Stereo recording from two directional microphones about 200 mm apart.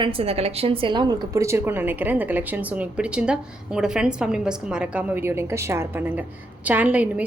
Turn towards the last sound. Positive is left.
turn(degrees=-5)  # may be behind; listen again after turning